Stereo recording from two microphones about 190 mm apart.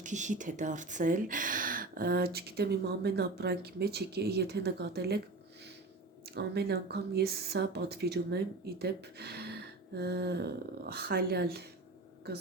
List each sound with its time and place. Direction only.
0.0 s speech: 40° right (ahead or behind); by 5.2 s 60° right (ahead or behind)
6.2 s speech: 60° right (ahead or behind)